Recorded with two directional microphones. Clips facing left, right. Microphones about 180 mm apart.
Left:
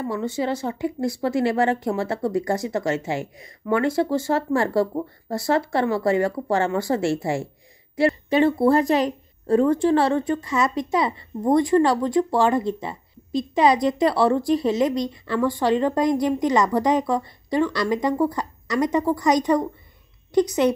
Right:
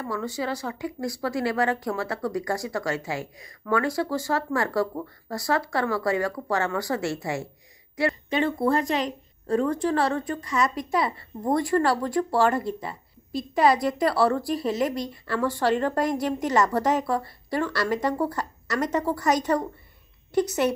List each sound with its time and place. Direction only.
0.0 s a woman's voice: 25° left (ahead or behind)